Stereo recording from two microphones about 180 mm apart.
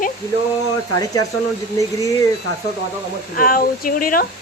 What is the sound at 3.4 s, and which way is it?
Speech, 50° left (ahead or behind).